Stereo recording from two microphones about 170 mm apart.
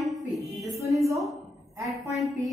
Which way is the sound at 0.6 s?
20° right (ahead or behind).